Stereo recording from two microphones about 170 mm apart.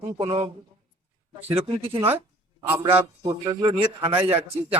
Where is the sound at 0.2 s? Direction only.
35° right (ahead or behind).